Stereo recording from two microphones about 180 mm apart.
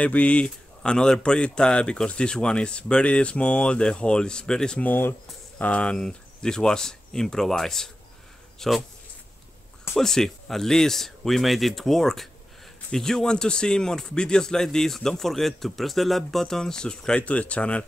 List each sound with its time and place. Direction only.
0.0 s speech: 5° left (ahead or behind)
9.9 s speech: centre (ahead or behind)